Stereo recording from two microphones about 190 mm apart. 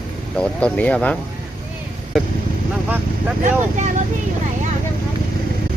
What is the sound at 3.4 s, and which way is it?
Speech, 40° right (ahead or behind).